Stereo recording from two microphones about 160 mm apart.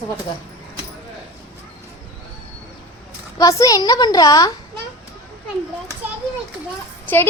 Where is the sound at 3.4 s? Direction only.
20° left (ahead or behind).